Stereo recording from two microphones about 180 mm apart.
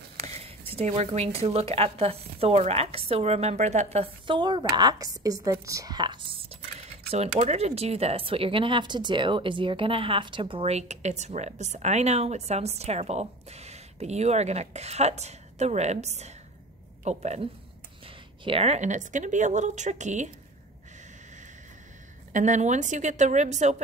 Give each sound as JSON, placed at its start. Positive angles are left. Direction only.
{"t": 0.2, "sound": "speech", "side_deg": -35}
{"t": 22.3, "sound": "speech", "side_deg": -45}